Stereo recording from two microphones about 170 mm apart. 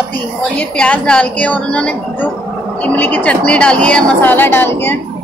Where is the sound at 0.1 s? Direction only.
5° left (ahead or behind).